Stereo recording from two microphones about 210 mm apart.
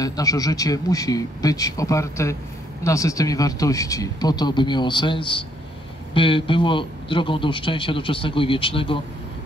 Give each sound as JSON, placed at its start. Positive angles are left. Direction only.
{"t": 0.0, "sound": "a man's voice", "side_deg": 15}